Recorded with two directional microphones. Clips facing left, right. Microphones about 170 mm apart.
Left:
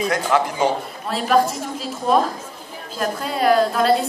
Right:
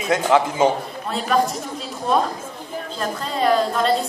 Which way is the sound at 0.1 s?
20° right (ahead or behind).